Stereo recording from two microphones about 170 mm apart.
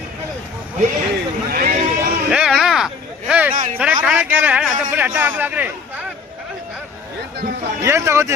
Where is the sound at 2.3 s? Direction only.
5° right (ahead or behind).